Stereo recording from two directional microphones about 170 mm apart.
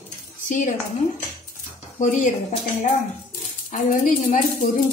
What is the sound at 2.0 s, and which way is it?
Speech, 45° left (ahead or behind).